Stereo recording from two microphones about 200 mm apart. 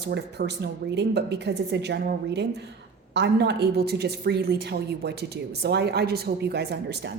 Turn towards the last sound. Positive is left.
turn(degrees=-55)  # may be behind; listen again after turning